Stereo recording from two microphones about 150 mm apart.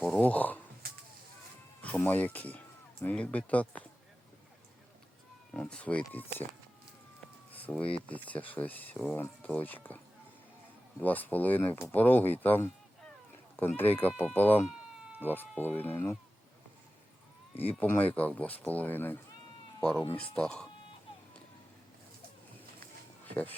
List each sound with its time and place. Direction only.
0.0 s speech: 10° left (ahead or behind)
1.8 s speech: 10° left (ahead or behind)
5.5 s speech: 5° left (ahead or behind)
7.5 s speech: 10° left (ahead or behind)
11.0 s speech: 10° left (ahead or behind)
17.5 s speech: 10° left (ahead or behind)
23.2 s a sound: 10° left (ahead or behind)